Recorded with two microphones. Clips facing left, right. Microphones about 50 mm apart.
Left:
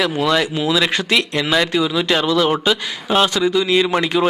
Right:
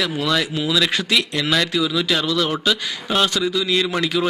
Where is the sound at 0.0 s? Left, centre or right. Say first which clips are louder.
Left 4 dB; centre.